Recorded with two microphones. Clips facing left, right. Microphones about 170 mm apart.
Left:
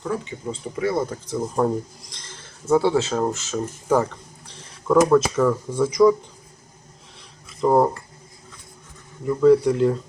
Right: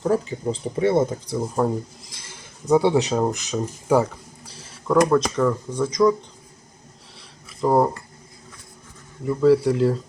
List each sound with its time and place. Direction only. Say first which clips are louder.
0.0 s speech: right 6 dB; 35° right (ahead or behind); by 1.4 s 20° right (ahead or behind)
1.4 s speech: left 1 dB; centre (ahead or behind)
7.6 s speech: left 1 dB; centre (ahead or behind)
9.2 s speech: left 1 dB; 5° right (ahead or behind)